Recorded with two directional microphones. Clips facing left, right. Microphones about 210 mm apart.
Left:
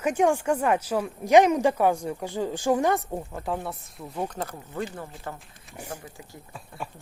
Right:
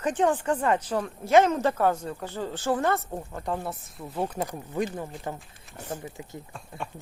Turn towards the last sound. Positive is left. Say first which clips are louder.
# even
turn(degrees=5)  # may be behind; listen again after turning